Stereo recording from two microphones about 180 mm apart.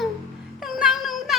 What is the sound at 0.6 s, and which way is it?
Child singing, centre (ahead or behind).